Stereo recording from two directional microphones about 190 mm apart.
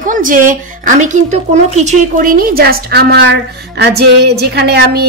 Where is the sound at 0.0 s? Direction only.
45° right (ahead or behind).